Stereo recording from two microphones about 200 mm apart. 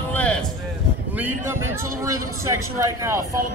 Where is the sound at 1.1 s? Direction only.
10° right (ahead or behind).